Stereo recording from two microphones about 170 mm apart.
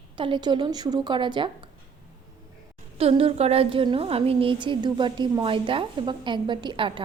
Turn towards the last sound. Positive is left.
turn(degrees=-30)  # may be behind; listen again after turning